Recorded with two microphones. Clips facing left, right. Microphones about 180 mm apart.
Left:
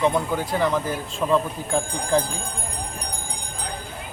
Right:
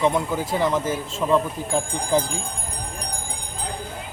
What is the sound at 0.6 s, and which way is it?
Speech, 20° right (ahead or behind).